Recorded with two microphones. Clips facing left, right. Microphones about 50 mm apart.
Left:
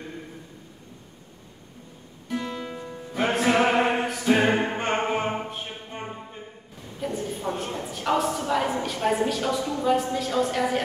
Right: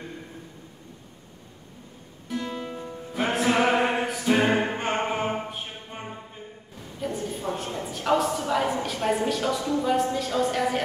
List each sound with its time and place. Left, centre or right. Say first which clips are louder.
2.2 s guitar: left 1 dB; centre
2.5 s music: even; centre
7.0 s a sound: left 1 dB; centre